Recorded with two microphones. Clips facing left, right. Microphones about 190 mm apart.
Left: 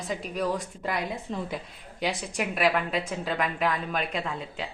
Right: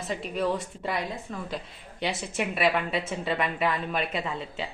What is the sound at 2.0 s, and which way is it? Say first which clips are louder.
A woman's voice: even; centre (ahead or behind).